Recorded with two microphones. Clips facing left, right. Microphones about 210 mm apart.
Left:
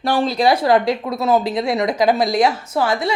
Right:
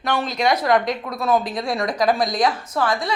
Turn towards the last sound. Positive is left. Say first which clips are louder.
# left 3 dB
turn(degrees=25)  # may be behind; listen again after turning